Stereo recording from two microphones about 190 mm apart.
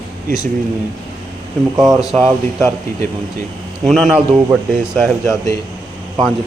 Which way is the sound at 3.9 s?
Centre (ahead or behind).